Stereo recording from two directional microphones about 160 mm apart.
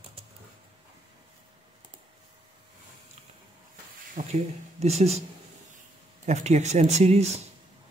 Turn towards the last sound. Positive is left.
turn(degrees=-40)  # may be behind; listen again after turning